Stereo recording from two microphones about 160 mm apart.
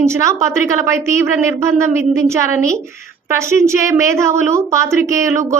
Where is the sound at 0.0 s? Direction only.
15° right (ahead or behind).